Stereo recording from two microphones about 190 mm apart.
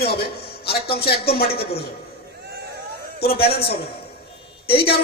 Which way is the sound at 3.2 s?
55° left (ahead or behind).